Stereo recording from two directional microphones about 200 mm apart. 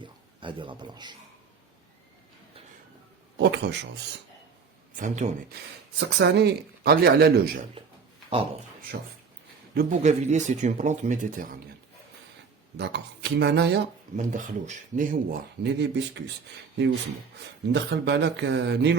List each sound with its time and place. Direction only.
0.0 s a man's voice: 25° right (ahead or behind)
3.3 s speech: 60° right (ahead or behind)
4.9 s speech: 40° right (ahead or behind)
6.0 s speech: 60° right (ahead or behind)
9.7 s speech: 35° right (ahead or behind)
12.7 s speech: 55° right (ahead or behind)
14.2 s speech: 40° right (ahead or behind); by 16.2 s 60° right (ahead or behind)
17.7 s speech: 60° right (ahead or behind)